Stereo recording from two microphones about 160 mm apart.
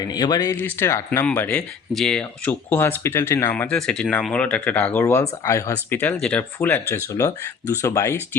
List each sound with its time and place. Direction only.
0.0 s speech: 25° left (ahead or behind)
0.5 s speech: 15° left (ahead or behind)